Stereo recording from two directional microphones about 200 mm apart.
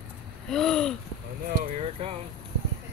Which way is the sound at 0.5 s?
Centre (ahead or behind).